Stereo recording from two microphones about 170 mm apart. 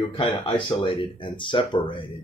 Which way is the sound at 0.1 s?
30° left (ahead or behind).